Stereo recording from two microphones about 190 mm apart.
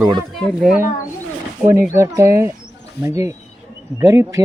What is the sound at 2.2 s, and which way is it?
Speech, 15° right (ahead or behind).